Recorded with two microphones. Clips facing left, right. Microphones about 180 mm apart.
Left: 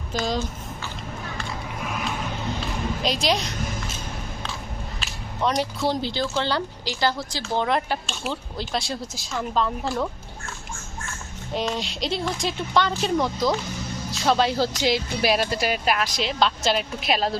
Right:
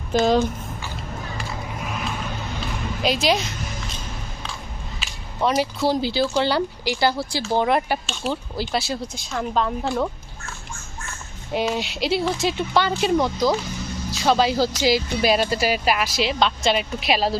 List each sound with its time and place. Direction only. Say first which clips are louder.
0.1 s speech: right 8 dB; 55° right (ahead or behind)
3.0 s a woman's voice: right 4 dB; 5° right (ahead or behind)
4.9 s speech: right 3 dB; 5° right (ahead or behind)
11.5 s speech: right 3 dB; 5° right (ahead or behind)